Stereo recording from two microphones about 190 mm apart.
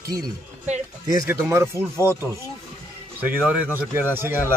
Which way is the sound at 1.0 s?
15° right (ahead or behind).